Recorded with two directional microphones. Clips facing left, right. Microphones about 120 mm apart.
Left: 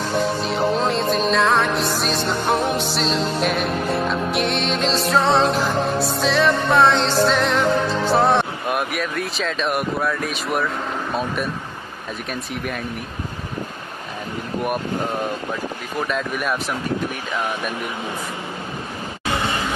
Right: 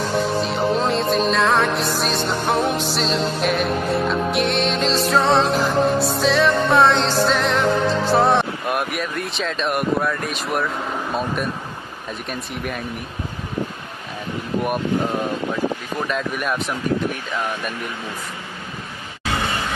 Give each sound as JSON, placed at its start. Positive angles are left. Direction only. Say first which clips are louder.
{"t": 0.2, "sound": "music", "louder": "left 2 dB", "side_deg": 0}
{"t": 16.1, "sound": "music", "louder": "even", "side_deg": 0}